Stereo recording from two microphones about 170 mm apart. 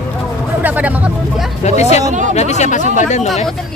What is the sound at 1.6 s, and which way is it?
Speech, 40° left (ahead or behind).